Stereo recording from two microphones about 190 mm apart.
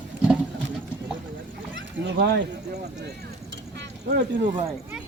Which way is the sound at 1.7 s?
65° right (ahead or behind).